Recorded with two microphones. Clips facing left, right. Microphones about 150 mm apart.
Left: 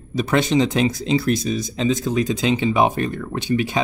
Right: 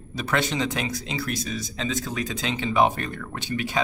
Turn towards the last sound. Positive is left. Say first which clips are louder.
# left 6 dB
turn(degrees=20)  # may be behind; listen again after turning